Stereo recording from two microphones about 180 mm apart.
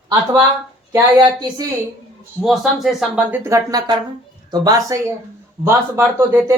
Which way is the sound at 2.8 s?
5° right (ahead or behind).